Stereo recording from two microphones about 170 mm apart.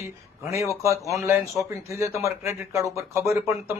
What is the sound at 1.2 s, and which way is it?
Speech, 15° right (ahead or behind).